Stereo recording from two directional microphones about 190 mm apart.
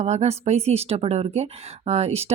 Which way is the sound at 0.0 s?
35° right (ahead or behind).